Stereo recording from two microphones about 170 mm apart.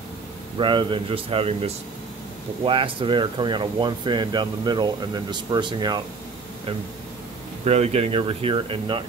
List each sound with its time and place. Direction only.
0.6 s speech: 30° right (ahead or behind)
7.6 s speech: 40° right (ahead or behind)